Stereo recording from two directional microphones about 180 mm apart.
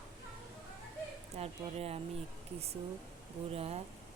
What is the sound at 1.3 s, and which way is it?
Speech, 35° right (ahead or behind).